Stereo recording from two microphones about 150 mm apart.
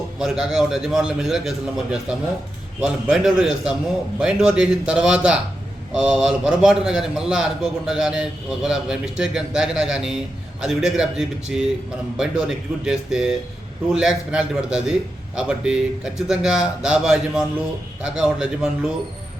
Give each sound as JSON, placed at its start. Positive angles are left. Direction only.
{"t": 0.2, "sound": "a man's voice", "side_deg": -5}